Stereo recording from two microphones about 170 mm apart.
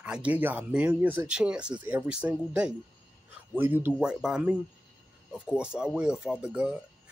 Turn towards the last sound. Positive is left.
turn(degrees=-5)  # may be behind; listen again after turning